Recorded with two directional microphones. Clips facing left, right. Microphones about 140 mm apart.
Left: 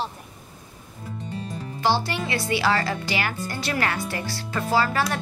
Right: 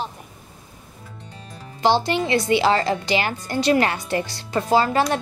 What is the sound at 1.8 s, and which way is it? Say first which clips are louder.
A woman's voice: right 5 dB; 20° right (ahead or behind).